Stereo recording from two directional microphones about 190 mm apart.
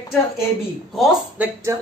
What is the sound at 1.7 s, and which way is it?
Speech, 15° right (ahead or behind).